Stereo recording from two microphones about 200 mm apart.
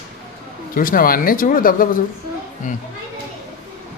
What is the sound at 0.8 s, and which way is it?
Speech, 45° left (ahead or behind).